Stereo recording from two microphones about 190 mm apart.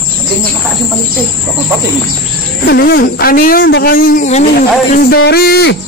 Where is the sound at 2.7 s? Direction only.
55° left (ahead or behind); by 4.4 s 40° left (ahead or behind).